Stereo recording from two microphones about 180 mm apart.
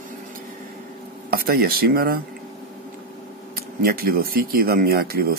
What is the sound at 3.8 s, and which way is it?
Speech, 55° right (ahead or behind).